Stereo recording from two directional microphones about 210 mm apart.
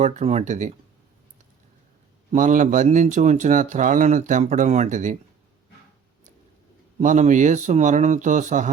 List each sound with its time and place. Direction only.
0.0 s speech: 30° right (ahead or behind)
2.3 s speech: 40° right (ahead or behind)
7.0 s speech: 35° right (ahead or behind)